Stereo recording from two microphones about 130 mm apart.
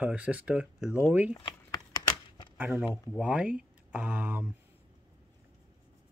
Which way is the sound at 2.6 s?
10° right (ahead or behind).